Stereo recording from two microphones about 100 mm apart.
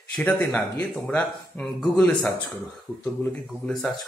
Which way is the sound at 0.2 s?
15° left (ahead or behind).